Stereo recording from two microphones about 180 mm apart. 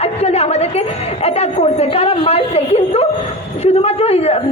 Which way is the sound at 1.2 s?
35° left (ahead or behind).